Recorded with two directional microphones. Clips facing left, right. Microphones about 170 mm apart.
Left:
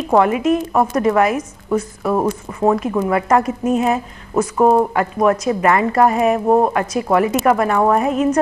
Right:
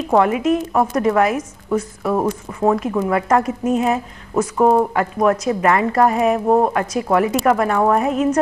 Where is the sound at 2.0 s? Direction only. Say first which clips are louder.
Left 1 dB; 20° left (ahead or behind).